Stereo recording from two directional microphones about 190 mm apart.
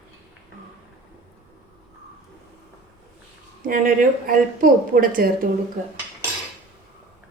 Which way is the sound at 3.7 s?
45° right (ahead or behind).